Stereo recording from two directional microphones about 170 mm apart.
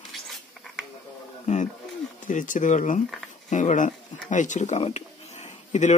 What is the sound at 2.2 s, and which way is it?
Speech, 50° left (ahead or behind).